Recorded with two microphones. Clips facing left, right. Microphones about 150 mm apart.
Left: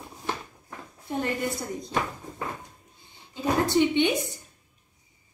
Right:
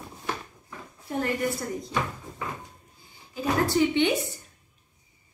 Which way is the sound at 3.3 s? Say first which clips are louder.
Left 1 dB; 20° left (ahead or behind).